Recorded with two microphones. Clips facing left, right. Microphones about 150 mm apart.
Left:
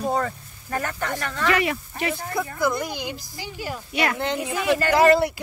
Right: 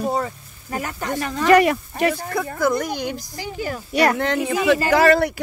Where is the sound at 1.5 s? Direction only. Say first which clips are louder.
Right 10 dB; 50° right (ahead or behind).